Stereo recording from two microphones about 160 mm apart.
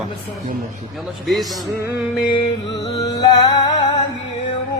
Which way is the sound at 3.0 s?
25° left (ahead or behind).